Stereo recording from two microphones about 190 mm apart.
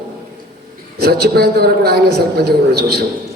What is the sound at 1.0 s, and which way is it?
A man's voice, 55° right (ahead or behind).